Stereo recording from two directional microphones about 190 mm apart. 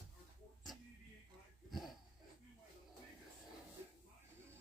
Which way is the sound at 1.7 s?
Centre (ahead or behind).